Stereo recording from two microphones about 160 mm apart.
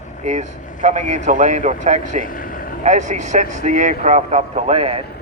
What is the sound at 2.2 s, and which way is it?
Vehicle, 60° left (ahead or behind).